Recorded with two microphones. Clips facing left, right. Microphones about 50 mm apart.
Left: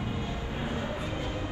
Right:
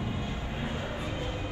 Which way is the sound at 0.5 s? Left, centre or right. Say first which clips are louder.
Left 2 dB; left.